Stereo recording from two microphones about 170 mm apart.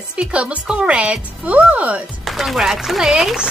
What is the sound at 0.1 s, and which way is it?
Speech, 5° right (ahead or behind).